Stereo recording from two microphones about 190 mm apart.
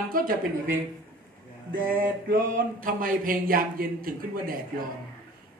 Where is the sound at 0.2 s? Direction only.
50° right (ahead or behind).